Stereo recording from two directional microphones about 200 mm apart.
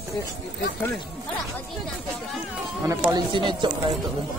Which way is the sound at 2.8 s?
15° right (ahead or behind).